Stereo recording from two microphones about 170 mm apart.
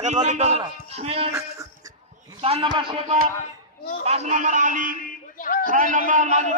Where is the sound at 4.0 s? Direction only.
40° right (ahead or behind).